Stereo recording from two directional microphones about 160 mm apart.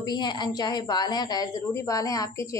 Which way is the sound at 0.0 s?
25° left (ahead or behind).